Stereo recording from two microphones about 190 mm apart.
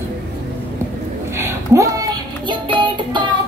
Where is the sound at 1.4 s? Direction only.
15° right (ahead or behind).